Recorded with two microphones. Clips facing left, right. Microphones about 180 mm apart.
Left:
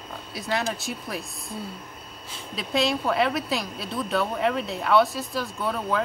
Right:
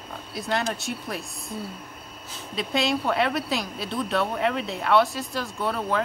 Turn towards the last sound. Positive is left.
turn(degrees=0)  # may be behind; listen again after turning